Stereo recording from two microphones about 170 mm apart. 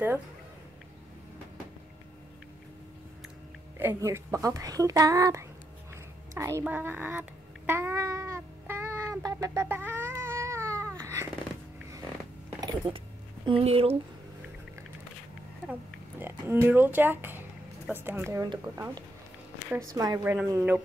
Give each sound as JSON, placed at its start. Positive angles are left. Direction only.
{"t": 3.7, "sound": "speech", "side_deg": -15}
{"t": 6.3, "sound": "a sound", "side_deg": -15}
{"t": 13.5, "sound": "speech", "side_deg": -35}
{"t": 15.6, "sound": "speech", "side_deg": -10}